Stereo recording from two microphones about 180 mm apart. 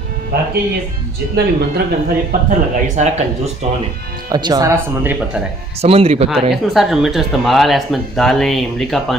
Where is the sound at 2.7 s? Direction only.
40° right (ahead or behind).